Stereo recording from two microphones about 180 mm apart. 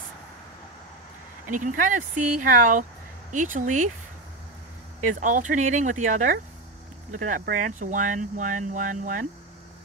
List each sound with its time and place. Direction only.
1.4 s speech: 45° right (ahead or behind)
5.0 s speech: 45° right (ahead or behind)